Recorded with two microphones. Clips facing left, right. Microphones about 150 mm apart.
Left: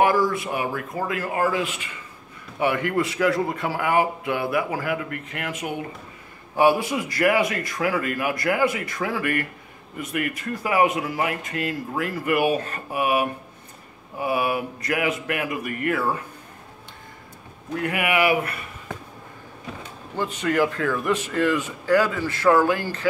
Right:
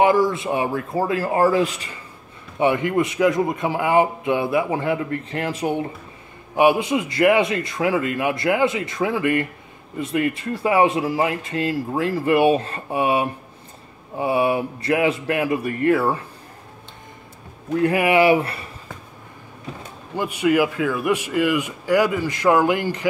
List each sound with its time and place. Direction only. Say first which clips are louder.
0.0 s a man's voice: right 3 dB; 25° right (ahead or behind)
2.6 s a man's voice: right 4 dB; 20° right (ahead or behind)
6.5 s a man's voice: right 2 dB; 20° right (ahead or behind)
17.7 s speech: right 6 dB; 30° right (ahead or behind)
20.2 s a man's voice: right 4 dB; 10° right (ahead or behind)